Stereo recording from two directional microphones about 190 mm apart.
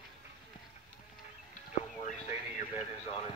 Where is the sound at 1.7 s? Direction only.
35° left (ahead or behind).